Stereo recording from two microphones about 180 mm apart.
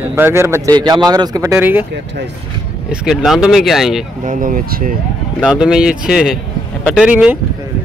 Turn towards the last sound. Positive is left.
turn(degrees=-5)  # may be behind; listen again after turning